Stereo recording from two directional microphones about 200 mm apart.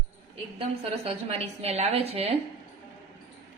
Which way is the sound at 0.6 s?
30° right (ahead or behind).